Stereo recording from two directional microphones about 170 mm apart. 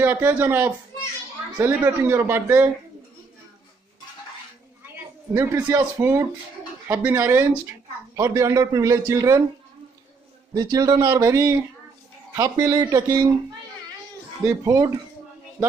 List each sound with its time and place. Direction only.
0.0 s a man's voice: 10° right (ahead or behind)
5.3 s a man's voice: 15° right (ahead or behind)
10.5 s a man's voice: 20° right (ahead or behind)
14.4 s a man's voice: 15° right (ahead or behind)